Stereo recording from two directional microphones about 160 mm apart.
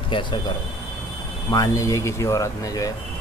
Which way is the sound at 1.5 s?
20° left (ahead or behind).